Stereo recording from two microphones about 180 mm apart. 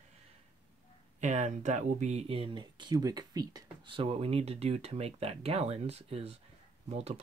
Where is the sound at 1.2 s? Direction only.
40° right (ahead or behind).